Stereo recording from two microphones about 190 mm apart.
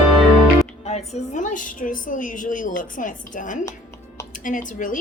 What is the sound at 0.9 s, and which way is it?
A woman's voice, 35° left (ahead or behind).